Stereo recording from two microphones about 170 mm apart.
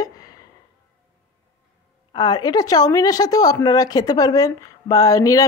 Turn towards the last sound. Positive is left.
turn(degrees=20)  # may be behind; listen again after turning